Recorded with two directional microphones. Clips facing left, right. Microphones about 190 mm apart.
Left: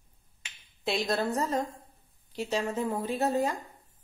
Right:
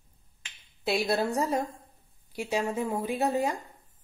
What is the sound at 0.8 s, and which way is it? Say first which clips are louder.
A woman's voice: right 2 dB; 10° right (ahead or behind).